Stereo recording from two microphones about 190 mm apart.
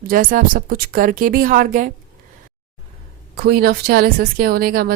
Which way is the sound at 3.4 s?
55° right (ahead or behind).